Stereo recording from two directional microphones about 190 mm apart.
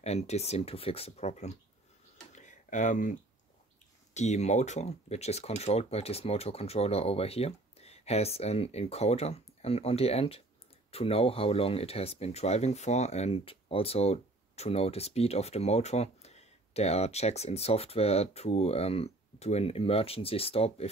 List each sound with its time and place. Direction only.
0.0 s speech: 35° left (ahead or behind)
2.3 s a sound: 40° left (ahead or behind)
4.1 s speech: 35° left (ahead or behind)